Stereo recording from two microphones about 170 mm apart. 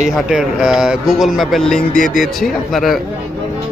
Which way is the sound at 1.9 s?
50° left (ahead or behind).